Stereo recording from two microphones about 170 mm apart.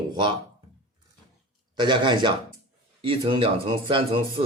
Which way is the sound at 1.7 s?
25° right (ahead or behind).